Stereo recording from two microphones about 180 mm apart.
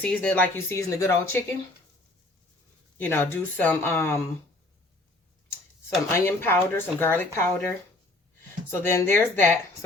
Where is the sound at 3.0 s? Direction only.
15° left (ahead or behind).